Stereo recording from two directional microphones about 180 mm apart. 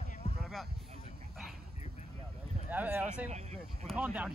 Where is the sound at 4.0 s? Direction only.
10° right (ahead or behind).